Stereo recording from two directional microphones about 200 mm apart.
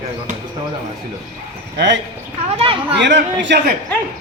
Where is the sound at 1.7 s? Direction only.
65° right (ahead or behind).